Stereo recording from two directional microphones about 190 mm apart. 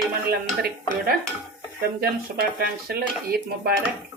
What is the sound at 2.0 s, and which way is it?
Speech, 55° right (ahead or behind).